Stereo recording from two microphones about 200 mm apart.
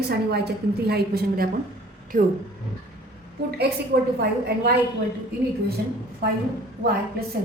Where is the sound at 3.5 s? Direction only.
55° right (ahead or behind).